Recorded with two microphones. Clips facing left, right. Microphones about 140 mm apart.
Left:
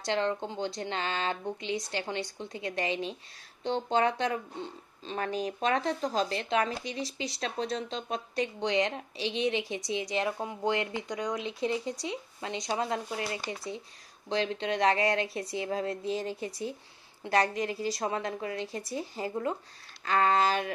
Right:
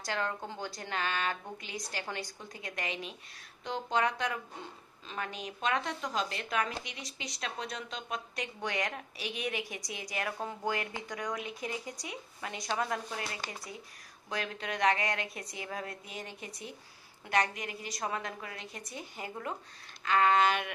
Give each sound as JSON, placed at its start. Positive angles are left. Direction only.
{"t": 0.0, "sound": "a woman's voice", "side_deg": 25}